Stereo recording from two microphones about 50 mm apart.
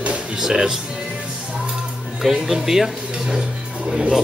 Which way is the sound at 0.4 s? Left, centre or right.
Centre.